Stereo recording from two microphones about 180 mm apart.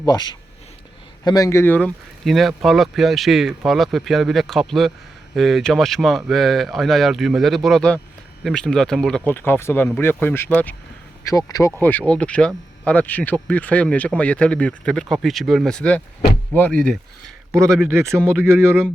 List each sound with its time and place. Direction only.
0.0 s speech: 20° left (ahead or behind); by 17.3 s 5° left (ahead or behind)
17.9 s speech: 15° right (ahead or behind)